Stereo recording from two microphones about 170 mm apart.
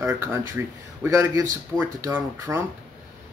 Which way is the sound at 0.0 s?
15° right (ahead or behind).